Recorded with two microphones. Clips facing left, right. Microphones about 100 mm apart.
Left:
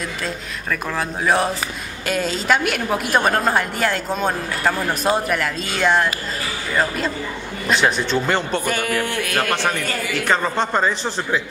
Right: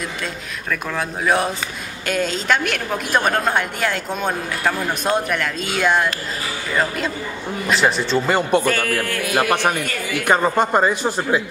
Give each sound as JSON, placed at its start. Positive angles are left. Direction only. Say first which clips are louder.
{"t": 0.7, "sound": "a woman's voice", "louder": "even", "side_deg": 0}
{"t": 8.6, "sound": "music", "louder": "right 1 dB", "side_deg": 15}
{"t": 9.2, "sound": "speech", "louder": "right 3 dB", "side_deg": -15}